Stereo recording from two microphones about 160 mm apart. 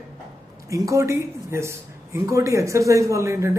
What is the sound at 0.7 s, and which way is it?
Speech, 20° right (ahead or behind).